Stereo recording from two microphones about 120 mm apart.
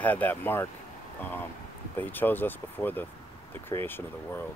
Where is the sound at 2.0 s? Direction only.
15° left (ahead or behind).